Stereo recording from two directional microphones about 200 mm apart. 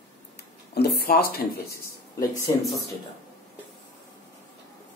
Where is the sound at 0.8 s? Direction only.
50° left (ahead or behind).